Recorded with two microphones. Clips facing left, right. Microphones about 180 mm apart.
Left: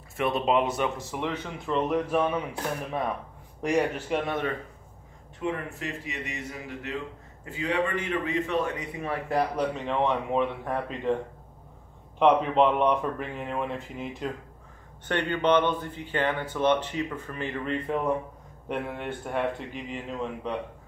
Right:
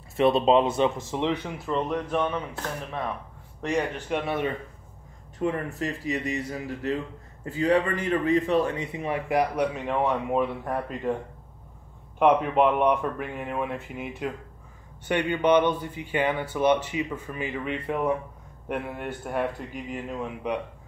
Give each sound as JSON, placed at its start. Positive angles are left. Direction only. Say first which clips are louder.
{"t": 0.2, "sound": "a man's voice", "louder": "right 5 dB", "side_deg": -25}
{"t": 1.7, "sound": "speech", "louder": "left 2 dB", "side_deg": 5}
{"t": 5.4, "sound": "a man's voice", "louder": "right 4 dB", "side_deg": -35}
{"t": 12.2, "sound": "speech", "louder": "even", "side_deg": -5}